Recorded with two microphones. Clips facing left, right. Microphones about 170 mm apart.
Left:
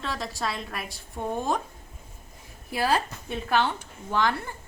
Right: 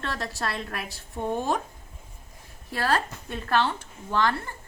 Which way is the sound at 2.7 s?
10° left (ahead or behind).